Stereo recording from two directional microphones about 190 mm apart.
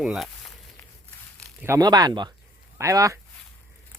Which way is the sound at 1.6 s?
15° right (ahead or behind).